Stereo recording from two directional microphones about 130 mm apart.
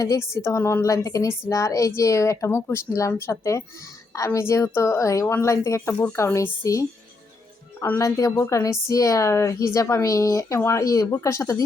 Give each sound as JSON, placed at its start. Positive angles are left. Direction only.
{"t": 0.0, "sound": "a woman's voice", "side_deg": 25}
{"t": 7.9, "sound": "a woman's voice", "side_deg": 25}